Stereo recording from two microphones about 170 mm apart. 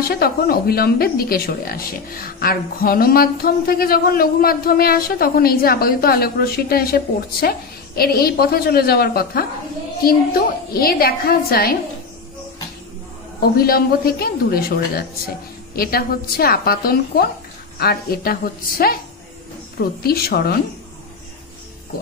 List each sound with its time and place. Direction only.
0.1 s speech: 65° left (ahead or behind)
13.4 s speech: 65° left (ahead or behind)
20.0 s speech: 65° left (ahead or behind)